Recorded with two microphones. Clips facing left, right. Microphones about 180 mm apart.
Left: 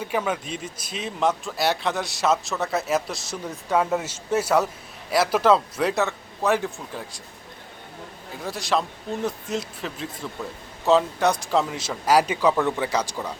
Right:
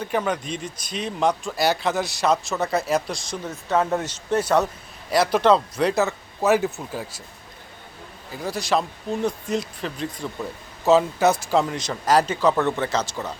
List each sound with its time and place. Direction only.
0.0 s a man's voice: 5° left (ahead or behind)
8.3 s a man's voice: centre (ahead or behind)